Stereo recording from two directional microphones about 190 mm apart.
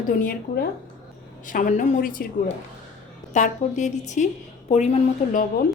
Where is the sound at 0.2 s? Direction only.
55° left (ahead or behind).